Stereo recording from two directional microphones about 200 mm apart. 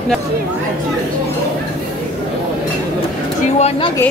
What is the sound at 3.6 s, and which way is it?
Speech, 30° left (ahead or behind).